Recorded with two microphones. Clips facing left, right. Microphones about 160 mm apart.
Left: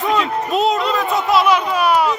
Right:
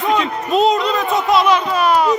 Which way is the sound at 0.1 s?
5° left (ahead or behind).